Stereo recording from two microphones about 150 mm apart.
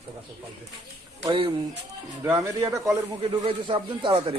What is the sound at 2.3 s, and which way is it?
Speech, 20° right (ahead or behind).